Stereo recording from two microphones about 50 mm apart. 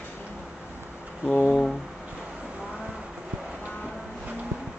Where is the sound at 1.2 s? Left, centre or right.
Left.